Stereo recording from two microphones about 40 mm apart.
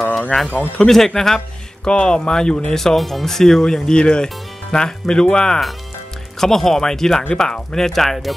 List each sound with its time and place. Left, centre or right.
0.3 s speech: centre
0.7 s speech: centre
1.9 s speech: left
6.4 s speech: centre